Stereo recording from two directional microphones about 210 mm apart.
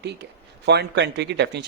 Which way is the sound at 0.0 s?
55° right (ahead or behind).